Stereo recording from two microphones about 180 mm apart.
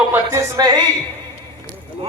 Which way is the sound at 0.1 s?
15° right (ahead or behind).